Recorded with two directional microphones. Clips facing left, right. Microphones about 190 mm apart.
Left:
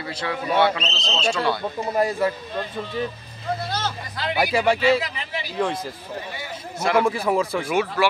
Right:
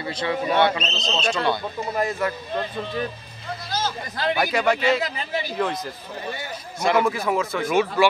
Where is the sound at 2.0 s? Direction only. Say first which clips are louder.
Left 3 dB; 35° left (ahead or behind).